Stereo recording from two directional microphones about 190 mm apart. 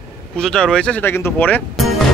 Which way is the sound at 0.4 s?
5° left (ahead or behind).